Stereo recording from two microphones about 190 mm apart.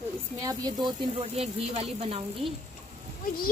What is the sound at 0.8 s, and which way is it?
Speech, 30° right (ahead or behind).